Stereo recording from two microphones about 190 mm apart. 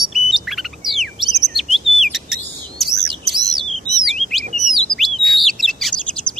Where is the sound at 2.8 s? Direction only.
Centre (ahead or behind).